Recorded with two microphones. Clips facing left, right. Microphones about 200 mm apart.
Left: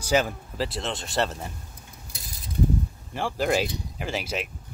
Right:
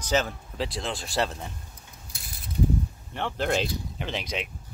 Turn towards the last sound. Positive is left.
turn(degrees=5)  # may be behind; listen again after turning